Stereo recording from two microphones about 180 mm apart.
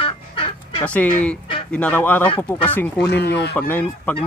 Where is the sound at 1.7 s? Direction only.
10° left (ahead or behind).